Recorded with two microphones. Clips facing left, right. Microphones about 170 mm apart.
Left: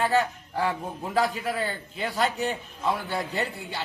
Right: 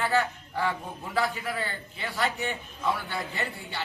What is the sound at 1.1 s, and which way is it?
A man's voice, 40° left (ahead or behind).